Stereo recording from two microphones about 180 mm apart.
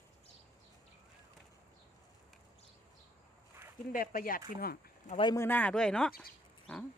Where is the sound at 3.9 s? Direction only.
50° left (ahead or behind).